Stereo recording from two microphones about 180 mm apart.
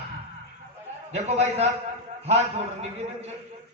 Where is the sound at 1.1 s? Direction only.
35° right (ahead or behind).